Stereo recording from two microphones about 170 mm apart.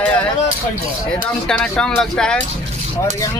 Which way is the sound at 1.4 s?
5° left (ahead or behind).